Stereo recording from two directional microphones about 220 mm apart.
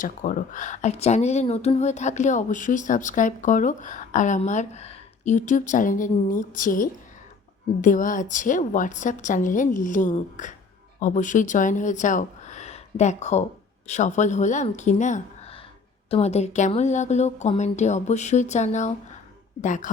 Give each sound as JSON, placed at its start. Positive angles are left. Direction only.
{"t": 0.0, "sound": "speech", "side_deg": 35}